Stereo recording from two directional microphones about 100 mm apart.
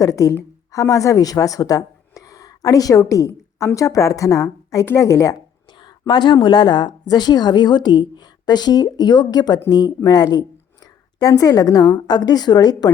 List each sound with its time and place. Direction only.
0.0 s a woman's voice: 35° left (ahead or behind)
5.8 s a woman's voice: 50° left (ahead or behind)